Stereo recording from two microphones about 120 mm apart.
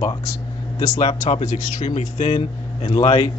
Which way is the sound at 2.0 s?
65° left (ahead or behind).